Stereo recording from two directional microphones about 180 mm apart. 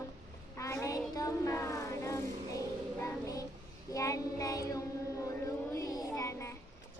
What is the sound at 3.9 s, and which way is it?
Child singing, 15° left (ahead or behind).